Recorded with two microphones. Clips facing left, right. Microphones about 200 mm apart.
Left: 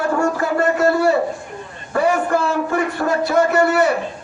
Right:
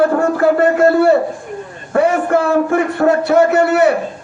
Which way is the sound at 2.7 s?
55° right (ahead or behind).